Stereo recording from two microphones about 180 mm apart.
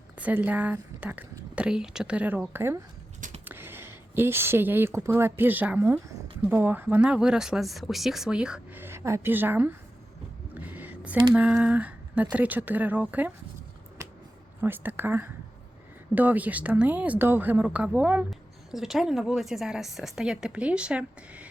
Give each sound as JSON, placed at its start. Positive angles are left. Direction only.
{"t": 0.2, "sound": "a woman's voice", "side_deg": -10}
{"t": 3.2, "sound": "a sound", "side_deg": -45}
{"t": 3.4, "sound": "speech", "side_deg": -10}
{"t": 10.5, "sound": "a sound", "side_deg": -10}
{"t": 11.3, "sound": "a woman's voice", "side_deg": -5}
{"t": 14.6, "sound": "a woman's voice", "side_deg": -10}